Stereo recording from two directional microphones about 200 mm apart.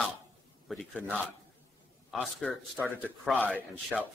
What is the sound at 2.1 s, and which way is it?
A man's voice, centre (ahead or behind).